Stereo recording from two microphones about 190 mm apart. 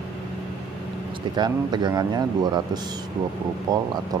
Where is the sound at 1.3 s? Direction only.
20° right (ahead or behind).